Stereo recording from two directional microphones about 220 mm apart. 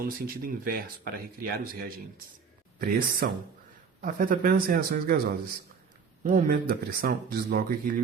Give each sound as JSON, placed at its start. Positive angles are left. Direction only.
{"t": 0.0, "sound": "speech", "side_deg": -40}
{"t": 6.2, "sound": "speech", "side_deg": -40}